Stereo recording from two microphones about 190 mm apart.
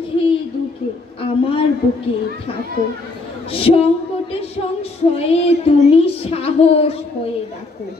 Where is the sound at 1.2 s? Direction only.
30° left (ahead or behind).